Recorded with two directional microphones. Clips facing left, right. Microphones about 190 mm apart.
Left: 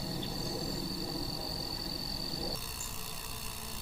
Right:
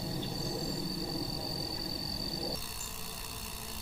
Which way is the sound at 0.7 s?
5° left (ahead or behind).